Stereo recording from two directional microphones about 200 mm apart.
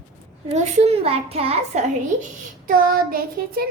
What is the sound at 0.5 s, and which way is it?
A child's voice, 30° right (ahead or behind).